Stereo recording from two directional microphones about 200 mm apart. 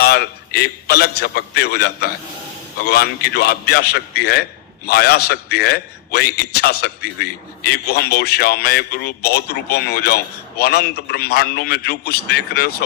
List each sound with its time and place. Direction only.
0.0 s a man's voice: 50° left (ahead or behind)